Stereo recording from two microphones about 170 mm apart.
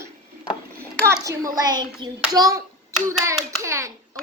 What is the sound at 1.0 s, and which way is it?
A child's voice, 20° right (ahead or behind).